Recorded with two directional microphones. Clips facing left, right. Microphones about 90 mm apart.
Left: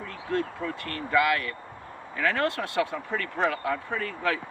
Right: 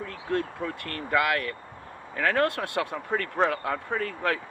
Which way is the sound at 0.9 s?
50° right (ahead or behind).